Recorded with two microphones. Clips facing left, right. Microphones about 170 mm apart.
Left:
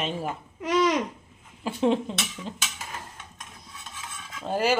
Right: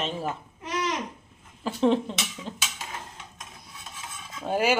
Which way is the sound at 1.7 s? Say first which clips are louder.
Right 1 dB; 5° left (ahead or behind).